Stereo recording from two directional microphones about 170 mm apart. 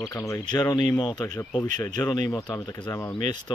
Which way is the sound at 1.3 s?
5° left (ahead or behind).